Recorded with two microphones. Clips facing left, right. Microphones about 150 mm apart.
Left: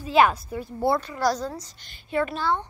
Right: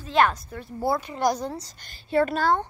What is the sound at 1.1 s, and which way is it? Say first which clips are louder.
Speech: even; 25° right (ahead or behind).